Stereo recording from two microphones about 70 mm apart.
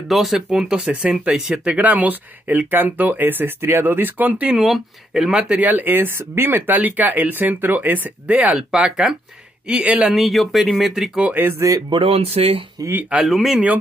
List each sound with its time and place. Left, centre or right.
0.1 s speech: centre; by 4.6 s right
4.6 s speech: centre
5.6 s speech: right
10.1 s speech: centre
11.3 s speech: right
11.9 s speech: right
12.8 s speech: right
13.2 s speech: centre